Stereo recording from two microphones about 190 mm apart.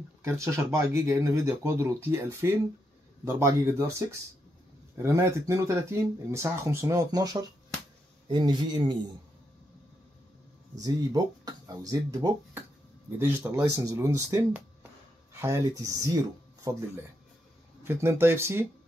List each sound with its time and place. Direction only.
0.2 s speech: 15° right (ahead or behind)
10.8 s speech: 20° right (ahead or behind)